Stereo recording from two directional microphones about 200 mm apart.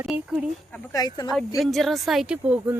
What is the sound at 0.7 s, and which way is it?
Speech, 15° left (ahead or behind).